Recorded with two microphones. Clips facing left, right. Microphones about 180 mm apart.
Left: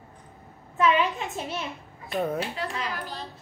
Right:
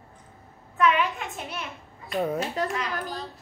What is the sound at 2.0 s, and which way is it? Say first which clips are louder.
Speech: right 1 dB; centre (ahead or behind).